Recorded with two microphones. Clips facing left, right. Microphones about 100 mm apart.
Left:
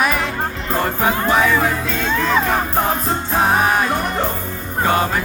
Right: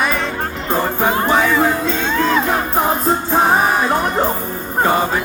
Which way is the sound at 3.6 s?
Centre (ahead or behind).